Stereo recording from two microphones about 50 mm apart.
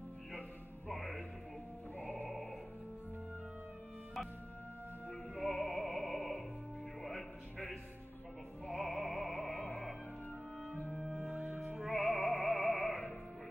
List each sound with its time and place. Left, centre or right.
0.8 s music: centre
5.3 s music: centre
5.7 s opera: centre
7.0 s music: centre
8.6 s opera: centre
10.9 s music: centre
11.1 s music: right
11.8 s music: centre